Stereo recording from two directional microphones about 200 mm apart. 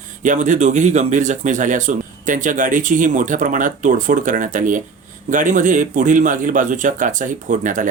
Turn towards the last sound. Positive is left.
turn(degrees=-40)  # may be behind; listen again after turning